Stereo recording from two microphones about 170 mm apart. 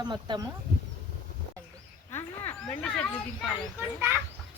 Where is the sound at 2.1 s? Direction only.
15° left (ahead or behind).